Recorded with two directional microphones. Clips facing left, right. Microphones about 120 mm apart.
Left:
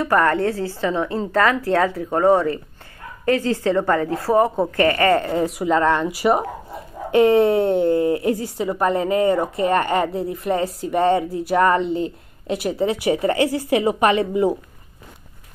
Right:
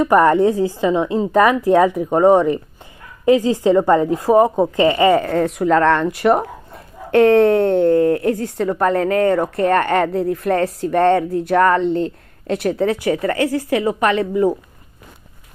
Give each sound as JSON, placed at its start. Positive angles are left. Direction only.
{"t": 0.0, "sound": "a woman's voice", "side_deg": -20}
{"t": 5.1, "sound": "a woman's voice", "side_deg": 0}
{"t": 12.9, "sound": "speech", "side_deg": 20}